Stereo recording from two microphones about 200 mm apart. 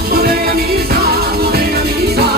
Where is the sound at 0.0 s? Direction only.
50° right (ahead or behind).